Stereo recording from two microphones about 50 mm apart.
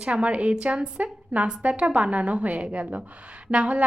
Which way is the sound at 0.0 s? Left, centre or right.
Right.